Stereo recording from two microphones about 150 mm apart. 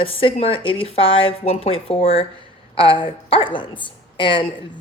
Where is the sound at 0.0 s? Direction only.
35° left (ahead or behind).